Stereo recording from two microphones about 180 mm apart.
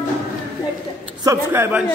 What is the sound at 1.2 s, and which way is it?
Speech, 15° right (ahead or behind).